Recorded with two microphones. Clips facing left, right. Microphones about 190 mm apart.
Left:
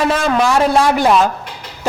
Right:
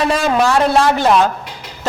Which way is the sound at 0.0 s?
5° left (ahead or behind).